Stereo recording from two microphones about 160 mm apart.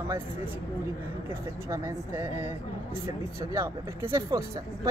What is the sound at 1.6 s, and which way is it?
Speech, 15° right (ahead or behind).